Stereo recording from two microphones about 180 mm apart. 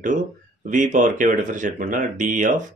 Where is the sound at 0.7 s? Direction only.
45° right (ahead or behind).